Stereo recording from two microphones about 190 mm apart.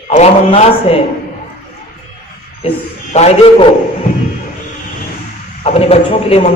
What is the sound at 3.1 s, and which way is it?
Speech, 30° left (ahead or behind).